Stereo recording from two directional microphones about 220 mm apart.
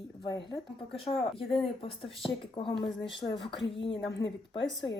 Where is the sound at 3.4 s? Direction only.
55° left (ahead or behind).